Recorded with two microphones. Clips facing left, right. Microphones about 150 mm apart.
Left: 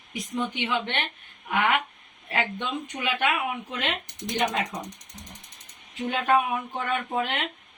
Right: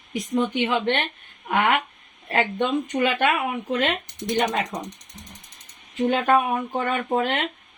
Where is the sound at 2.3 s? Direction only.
45° right (ahead or behind).